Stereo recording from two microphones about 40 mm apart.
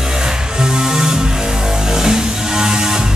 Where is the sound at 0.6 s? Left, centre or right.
Centre.